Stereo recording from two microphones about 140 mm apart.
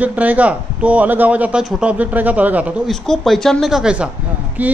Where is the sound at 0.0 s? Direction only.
10° right (ahead or behind).